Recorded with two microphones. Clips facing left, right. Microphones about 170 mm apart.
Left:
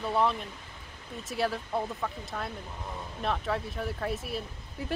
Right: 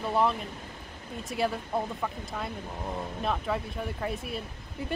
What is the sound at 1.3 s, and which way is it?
Speech, centre (ahead or behind).